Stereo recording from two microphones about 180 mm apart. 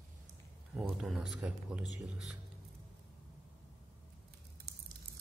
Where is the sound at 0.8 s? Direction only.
5° right (ahead or behind).